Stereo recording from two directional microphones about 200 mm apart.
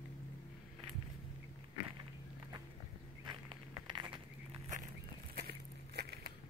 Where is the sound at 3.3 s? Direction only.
25° right (ahead or behind).